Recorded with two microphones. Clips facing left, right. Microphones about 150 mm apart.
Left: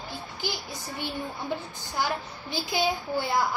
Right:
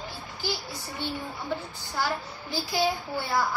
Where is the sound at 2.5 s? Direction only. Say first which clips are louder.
Even; 20° left (ahead or behind).